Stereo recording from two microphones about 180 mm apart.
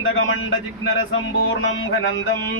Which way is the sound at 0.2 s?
90° left.